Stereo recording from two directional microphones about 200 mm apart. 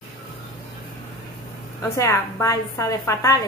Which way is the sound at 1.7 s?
15° left (ahead or behind).